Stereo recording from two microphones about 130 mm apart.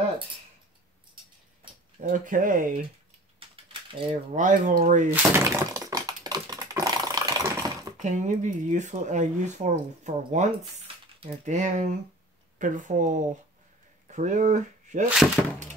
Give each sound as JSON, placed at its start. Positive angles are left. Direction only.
{"t": 2.0, "sound": "speech", "side_deg": -90}
{"t": 3.3, "sound": "a sound", "side_deg": -40}
{"t": 4.1, "sound": "speech", "side_deg": -75}
{"t": 5.1, "sound": "typing", "side_deg": -20}
{"t": 8.0, "sound": "speech", "side_deg": -65}
{"t": 12.5, "sound": "speech", "side_deg": -85}